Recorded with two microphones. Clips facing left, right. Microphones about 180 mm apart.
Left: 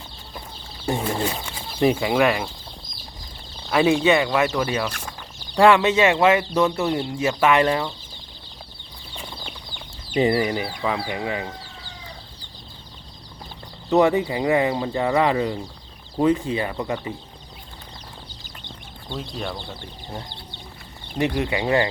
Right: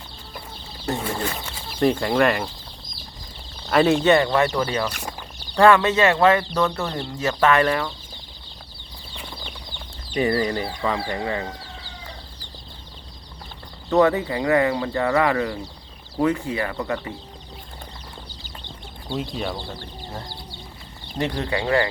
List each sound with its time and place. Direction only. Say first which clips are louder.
0.9 s speech: left 2 dB; 15° left (ahead or behind)
4.0 s speech: right 1 dB; 5° left (ahead or behind)
5.5 s speech: even; 15° left (ahead or behind)
10.2 s speech: left 2 dB; 20° left (ahead or behind)
10.4 s speech: even; 10° left (ahead or behind)
13.9 s speech: even; 25° left (ahead or behind)
19.0 s speech: right 3 dB; 10° right (ahead or behind)
21.2 s speech: left 2 dB; 15° left (ahead or behind)